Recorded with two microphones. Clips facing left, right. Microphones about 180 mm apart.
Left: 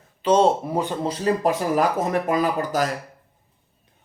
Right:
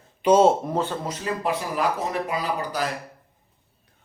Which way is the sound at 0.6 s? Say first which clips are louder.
Left 1 dB; 10° left (ahead or behind).